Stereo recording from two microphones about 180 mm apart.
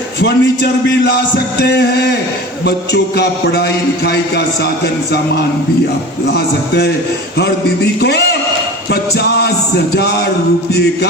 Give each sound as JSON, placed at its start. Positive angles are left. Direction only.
{"t": 0.2, "sound": "a man's voice", "side_deg": 65}
{"t": 6.2, "sound": "a man's voice", "side_deg": 65}
{"t": 8.0, "sound": "a man's voice", "side_deg": 65}